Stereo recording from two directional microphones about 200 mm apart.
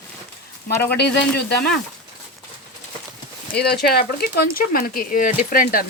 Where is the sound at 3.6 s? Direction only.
50° left (ahead or behind).